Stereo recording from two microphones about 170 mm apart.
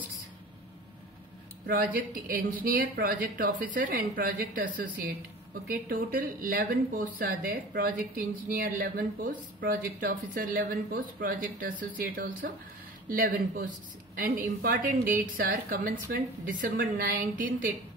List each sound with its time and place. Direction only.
1.7 s speech: 55° right (ahead or behind)